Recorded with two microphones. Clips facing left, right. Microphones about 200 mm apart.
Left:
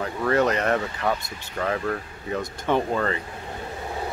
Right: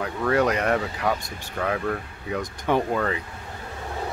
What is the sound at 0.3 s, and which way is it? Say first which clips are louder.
Speech: even; 10° right (ahead or behind).